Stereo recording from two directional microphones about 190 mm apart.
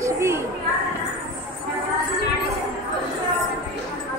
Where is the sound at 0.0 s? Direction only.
15° right (ahead or behind).